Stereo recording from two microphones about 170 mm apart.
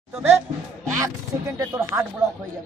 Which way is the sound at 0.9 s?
20° right (ahead or behind).